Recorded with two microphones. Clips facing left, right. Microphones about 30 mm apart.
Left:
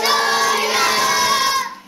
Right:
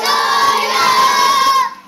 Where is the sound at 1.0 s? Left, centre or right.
Right.